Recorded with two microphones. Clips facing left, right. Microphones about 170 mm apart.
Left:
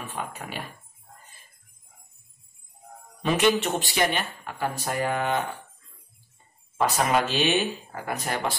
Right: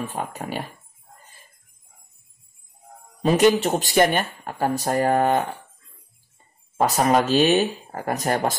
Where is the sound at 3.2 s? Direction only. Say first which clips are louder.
Right 5 dB; 40° right (ahead or behind).